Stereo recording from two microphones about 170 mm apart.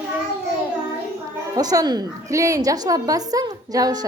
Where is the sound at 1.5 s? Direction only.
20° right (ahead or behind).